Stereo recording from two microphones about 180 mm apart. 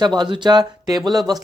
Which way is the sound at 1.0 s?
Centre (ahead or behind).